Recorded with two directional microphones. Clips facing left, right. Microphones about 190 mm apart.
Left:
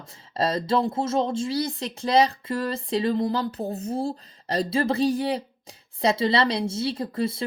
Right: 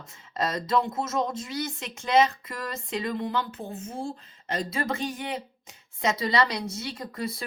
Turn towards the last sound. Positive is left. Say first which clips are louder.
# left 7 dB
turn(degrees=30)  # may be behind; listen again after turning